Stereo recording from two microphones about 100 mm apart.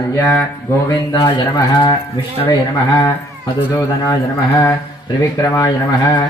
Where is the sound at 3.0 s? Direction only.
35° left (ahead or behind).